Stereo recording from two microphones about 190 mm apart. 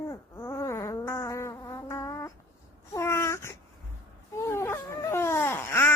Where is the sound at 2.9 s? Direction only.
15° left (ahead or behind).